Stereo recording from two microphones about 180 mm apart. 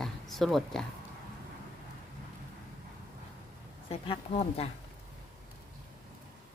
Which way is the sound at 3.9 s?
30° left (ahead or behind).